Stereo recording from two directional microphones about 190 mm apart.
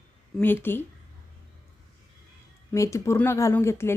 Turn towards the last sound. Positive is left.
turn(degrees=15)  # may be behind; listen again after turning